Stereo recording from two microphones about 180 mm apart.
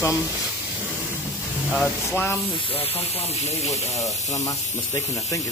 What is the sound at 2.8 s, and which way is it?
Speech, 35° left (ahead or behind).